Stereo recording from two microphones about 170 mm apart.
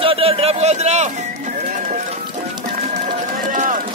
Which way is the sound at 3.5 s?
50° right (ahead or behind).